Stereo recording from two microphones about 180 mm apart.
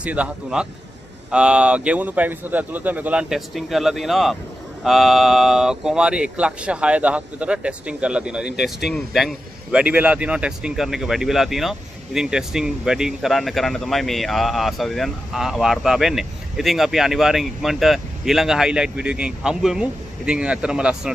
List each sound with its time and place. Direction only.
0.0 s a man's voice: 5° right (ahead or behind)